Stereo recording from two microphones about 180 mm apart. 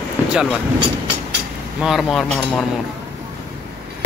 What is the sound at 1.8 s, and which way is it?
Speech, centre (ahead or behind).